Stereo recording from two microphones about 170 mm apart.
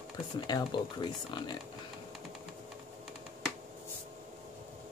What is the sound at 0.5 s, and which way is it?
Speech, 25° left (ahead or behind).